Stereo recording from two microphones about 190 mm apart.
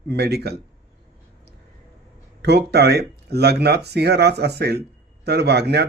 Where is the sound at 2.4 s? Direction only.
60° right (ahead or behind).